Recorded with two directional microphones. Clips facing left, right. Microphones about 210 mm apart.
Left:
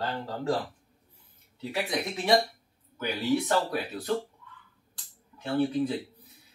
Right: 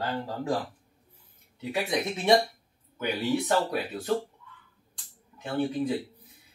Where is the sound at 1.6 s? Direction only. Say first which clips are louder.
Right 2 dB; 20° right (ahead or behind).